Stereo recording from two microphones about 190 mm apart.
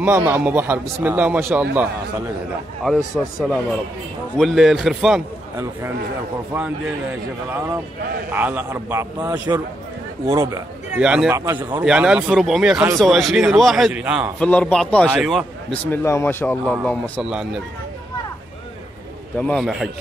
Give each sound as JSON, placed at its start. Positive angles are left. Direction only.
{"t": 0.0, "sound": "a man's voice", "side_deg": -10}
{"t": 2.8, "sound": "a man's voice", "side_deg": 0}
{"t": 6.5, "sound": "a man's voice", "side_deg": -10}
{"t": 11.0, "sound": "a man's voice", "side_deg": -5}
{"t": 14.4, "sound": "a man's voice", "side_deg": 5}
{"t": 15.9, "sound": "a man's voice", "side_deg": 15}
{"t": 19.3, "sound": "a man's voice", "side_deg": 5}